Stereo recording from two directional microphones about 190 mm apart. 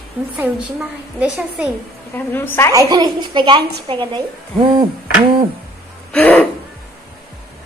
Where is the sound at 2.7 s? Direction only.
20° right (ahead or behind).